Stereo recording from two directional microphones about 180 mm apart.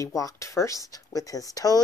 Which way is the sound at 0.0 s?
20° left (ahead or behind).